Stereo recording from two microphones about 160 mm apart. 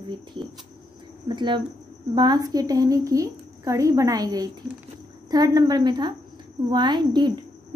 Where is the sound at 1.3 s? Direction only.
30° right (ahead or behind).